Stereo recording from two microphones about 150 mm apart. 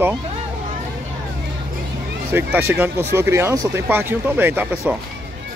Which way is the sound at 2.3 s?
15° right (ahead or behind).